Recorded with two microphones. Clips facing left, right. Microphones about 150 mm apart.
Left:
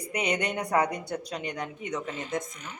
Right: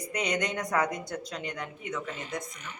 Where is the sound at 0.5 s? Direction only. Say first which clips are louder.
Left 2 dB; 30° left (ahead or behind).